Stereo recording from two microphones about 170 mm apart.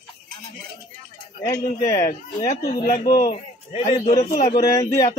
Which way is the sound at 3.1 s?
25° left (ahead or behind).